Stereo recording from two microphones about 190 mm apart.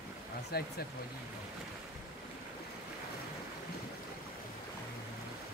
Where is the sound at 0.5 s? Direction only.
55° left (ahead or behind).